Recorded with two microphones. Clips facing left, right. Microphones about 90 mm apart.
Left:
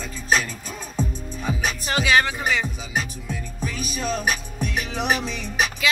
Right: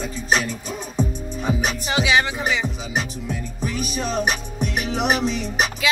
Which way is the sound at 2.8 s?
25° right (ahead or behind).